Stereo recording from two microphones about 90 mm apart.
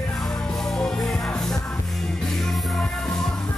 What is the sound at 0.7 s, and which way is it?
Music, 5° left (ahead or behind).